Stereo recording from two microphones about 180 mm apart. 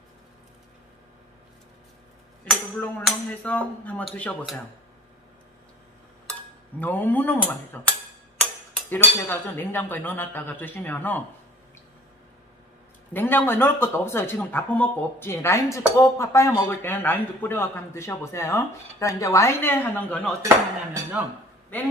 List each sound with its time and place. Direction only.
2.4 s a man's voice: 5° left (ahead or behind)
6.8 s a man's voice: 10° left (ahead or behind)
13.1 s a man's voice: 10° left (ahead or behind)
20.4 s dishes: 15° right (ahead or behind)
21.7 s a man's voice: 10° left (ahead or behind)